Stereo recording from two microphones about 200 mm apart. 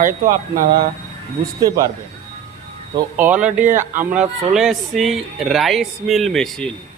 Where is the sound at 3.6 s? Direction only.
40° right (ahead or behind).